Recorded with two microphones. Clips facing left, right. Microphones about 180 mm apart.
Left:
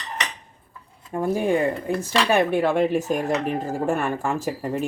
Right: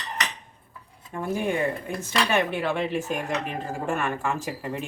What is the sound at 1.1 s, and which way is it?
Speech, 35° left (ahead or behind).